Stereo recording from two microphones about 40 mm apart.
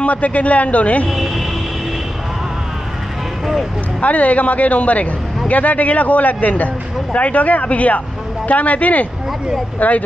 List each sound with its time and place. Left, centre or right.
0.0 s speech: left
4.0 s speech: left